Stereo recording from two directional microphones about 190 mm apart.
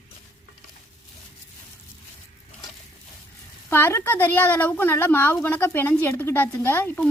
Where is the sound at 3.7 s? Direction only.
10° left (ahead or behind).